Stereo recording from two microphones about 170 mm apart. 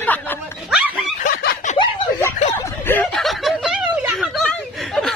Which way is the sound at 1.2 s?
60° left (ahead or behind).